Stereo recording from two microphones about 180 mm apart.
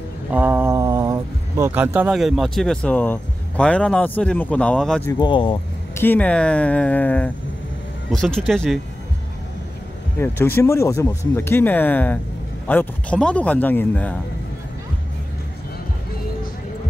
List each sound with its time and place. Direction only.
0.3 s speech: 10° right (ahead or behind)
5.2 s speech: 30° left (ahead or behind)
5.9 s speech: 10° left (ahead or behind)
10.1 s speech: 15° left (ahead or behind)